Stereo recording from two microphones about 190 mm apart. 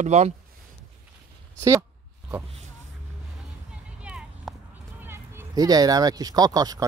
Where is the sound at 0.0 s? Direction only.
35° right (ahead or behind).